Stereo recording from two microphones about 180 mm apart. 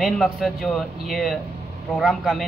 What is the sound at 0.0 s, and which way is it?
A man's voice, centre (ahead or behind).